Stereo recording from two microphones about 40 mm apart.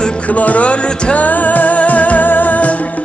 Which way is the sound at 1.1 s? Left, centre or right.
Left.